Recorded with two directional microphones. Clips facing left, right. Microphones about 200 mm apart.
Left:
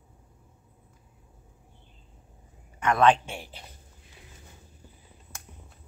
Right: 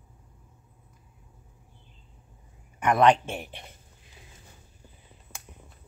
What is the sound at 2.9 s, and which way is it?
Speech, 20° right (ahead or behind).